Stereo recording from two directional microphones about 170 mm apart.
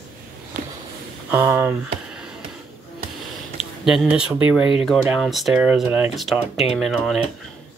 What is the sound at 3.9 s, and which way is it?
Speech, 5° right (ahead or behind).